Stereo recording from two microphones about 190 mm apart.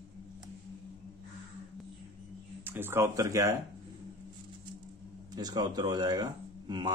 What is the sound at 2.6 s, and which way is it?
Speech, 10° right (ahead or behind).